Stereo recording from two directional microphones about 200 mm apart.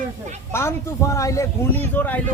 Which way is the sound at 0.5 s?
15° left (ahead or behind).